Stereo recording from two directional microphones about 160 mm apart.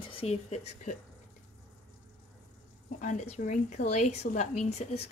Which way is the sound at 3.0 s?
50° left (ahead or behind).